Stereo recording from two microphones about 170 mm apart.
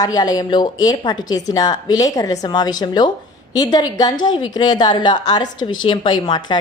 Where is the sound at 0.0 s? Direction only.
20° left (ahead or behind).